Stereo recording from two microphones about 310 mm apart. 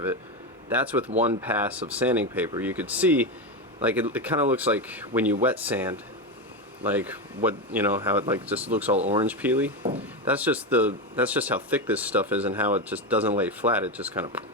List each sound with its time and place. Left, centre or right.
0.7 s speech: centre
9.0 s speech: right
9.2 s speech: centre